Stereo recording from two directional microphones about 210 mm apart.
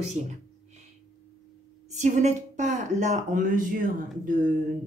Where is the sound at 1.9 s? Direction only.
35° right (ahead or behind).